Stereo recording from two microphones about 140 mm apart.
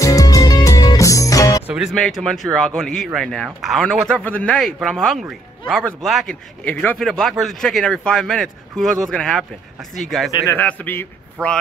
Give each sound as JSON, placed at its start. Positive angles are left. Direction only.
{"t": 0.0, "sound": "music", "side_deg": 25}
{"t": 1.7, "sound": "a man's voice", "side_deg": -5}
{"t": 6.6, "sound": "a man's voice", "side_deg": 10}
{"t": 10.5, "sound": "a man's voice", "side_deg": 10}